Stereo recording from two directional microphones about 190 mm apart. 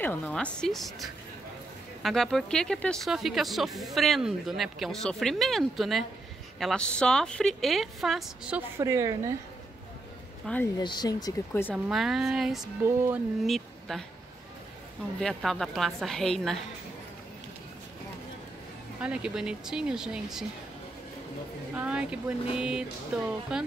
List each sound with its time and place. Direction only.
0.0 s speech: 10° left (ahead or behind); by 9.3 s 15° right (ahead or behind)
10.4 s speech: 5° left (ahead or behind)
10.8 s speech: 25° left (ahead or behind)
11.7 s speech: centre (ahead or behind)
12.8 s speech: 10° right (ahead or behind)
13.5 s speech: centre (ahead or behind)
15.1 s speech: centre (ahead or behind)
18.9 s speech: 5° right (ahead or behind)
21.7 s speech: 5° right (ahead or behind)